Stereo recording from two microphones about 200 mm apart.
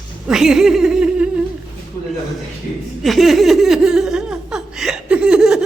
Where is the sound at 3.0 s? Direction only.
Centre (ahead or behind).